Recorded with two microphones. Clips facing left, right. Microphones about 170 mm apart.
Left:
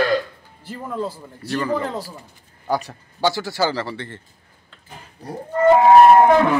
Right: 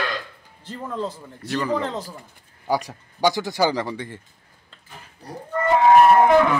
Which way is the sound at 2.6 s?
10° right (ahead or behind).